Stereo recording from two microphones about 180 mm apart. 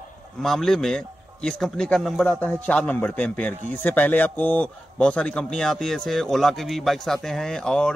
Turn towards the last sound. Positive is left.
turn(degrees=5)  # may be behind; listen again after turning